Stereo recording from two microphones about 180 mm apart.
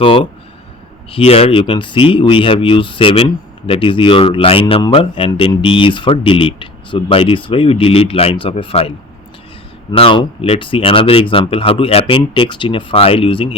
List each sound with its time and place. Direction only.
0.0 s speech: 30° left (ahead or behind)
9.9 s speech: 30° left (ahead or behind)